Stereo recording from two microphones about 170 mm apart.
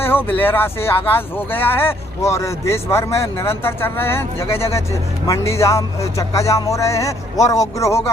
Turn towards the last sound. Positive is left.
turn(degrees=20)  # may be behind; listen again after turning